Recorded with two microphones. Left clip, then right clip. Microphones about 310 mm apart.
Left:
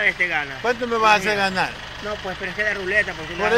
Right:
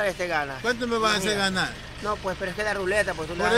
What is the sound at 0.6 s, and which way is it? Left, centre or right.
Speech, centre.